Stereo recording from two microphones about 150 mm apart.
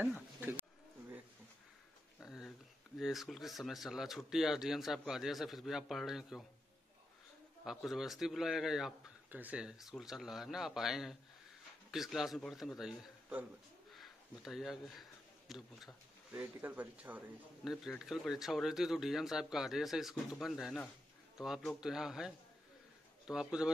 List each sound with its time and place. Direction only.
0.0 s speech: 10° right (ahead or behind)
2.1 s a sound: centre (ahead or behind)
3.0 s speech: centre (ahead or behind)
7.6 s speech: centre (ahead or behind)